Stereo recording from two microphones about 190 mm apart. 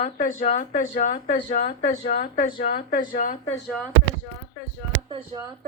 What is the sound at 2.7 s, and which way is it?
Speech, 50° left (ahead or behind).